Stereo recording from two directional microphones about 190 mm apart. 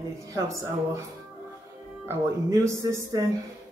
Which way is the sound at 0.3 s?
15° right (ahead or behind).